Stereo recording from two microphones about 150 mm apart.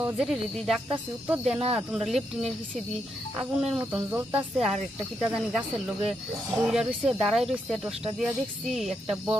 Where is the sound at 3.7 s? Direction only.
5° right (ahead or behind).